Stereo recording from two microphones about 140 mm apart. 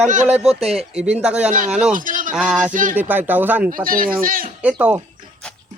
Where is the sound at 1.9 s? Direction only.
70° right (ahead or behind).